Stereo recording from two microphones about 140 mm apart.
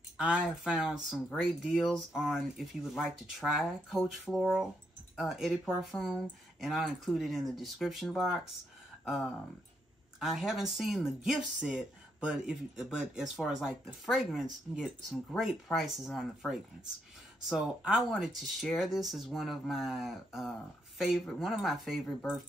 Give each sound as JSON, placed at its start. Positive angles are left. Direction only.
{"t": 0.2, "sound": "speech", "side_deg": -5}